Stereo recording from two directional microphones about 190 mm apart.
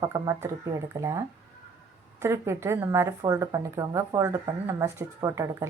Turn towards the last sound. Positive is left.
turn(degrees=-15)  # may be behind; listen again after turning